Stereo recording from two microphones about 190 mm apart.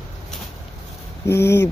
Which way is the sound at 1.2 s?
15° left (ahead or behind).